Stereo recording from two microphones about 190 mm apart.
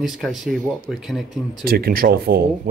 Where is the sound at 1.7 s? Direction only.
50° right (ahead or behind).